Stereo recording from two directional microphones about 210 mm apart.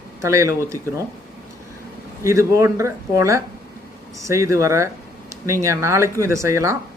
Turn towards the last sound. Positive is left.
turn(degrees=-15)  # may be behind; listen again after turning